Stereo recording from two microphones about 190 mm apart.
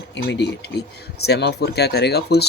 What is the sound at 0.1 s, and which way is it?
Speech, 65° left (ahead or behind).